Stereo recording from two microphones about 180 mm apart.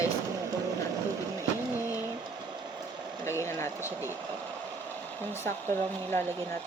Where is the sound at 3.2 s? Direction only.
15° left (ahead or behind).